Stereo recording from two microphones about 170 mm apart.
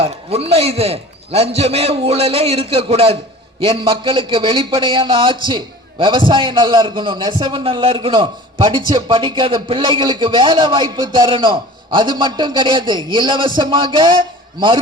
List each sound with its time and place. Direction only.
0.0 s a man's voice: 35° right (ahead or behind)